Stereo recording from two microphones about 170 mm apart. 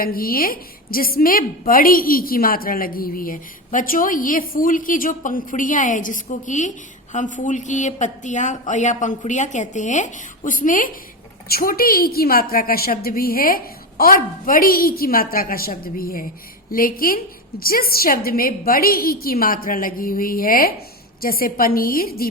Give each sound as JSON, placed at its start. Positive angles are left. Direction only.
{"t": 0.0, "sound": "a woman's voice", "side_deg": 60}